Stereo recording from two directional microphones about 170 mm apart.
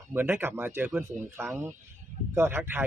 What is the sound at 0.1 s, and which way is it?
A man's voice, 10° right (ahead or behind).